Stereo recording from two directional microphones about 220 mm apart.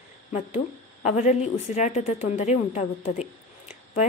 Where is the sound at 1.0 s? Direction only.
35° left (ahead or behind).